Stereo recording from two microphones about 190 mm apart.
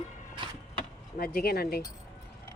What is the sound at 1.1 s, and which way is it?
Speech, 50° left (ahead or behind).